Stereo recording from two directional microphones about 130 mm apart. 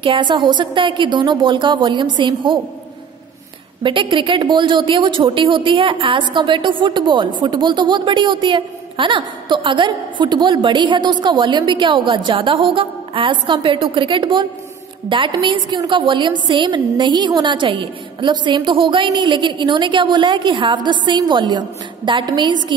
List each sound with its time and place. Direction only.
0.0 s speech: 40° right (ahead or behind)
3.8 s speech: 40° right (ahead or behind)